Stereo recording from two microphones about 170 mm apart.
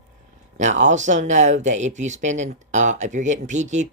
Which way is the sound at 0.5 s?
45° right (ahead or behind).